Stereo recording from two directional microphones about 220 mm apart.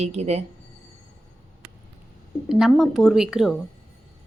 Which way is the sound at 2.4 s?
Centre (ahead or behind).